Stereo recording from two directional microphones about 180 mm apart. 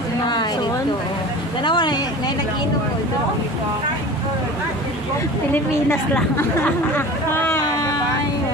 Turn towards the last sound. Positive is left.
turn(degrees=15)  # may be behind; listen again after turning